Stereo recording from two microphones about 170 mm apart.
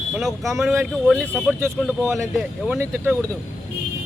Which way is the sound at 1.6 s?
15° right (ahead or behind).